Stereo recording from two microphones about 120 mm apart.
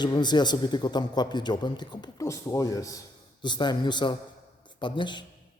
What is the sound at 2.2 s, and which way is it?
A man's voice, 25° left (ahead or behind).